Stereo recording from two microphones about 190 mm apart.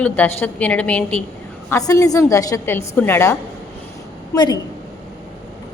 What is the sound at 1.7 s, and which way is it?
A woman's voice, 15° left (ahead or behind).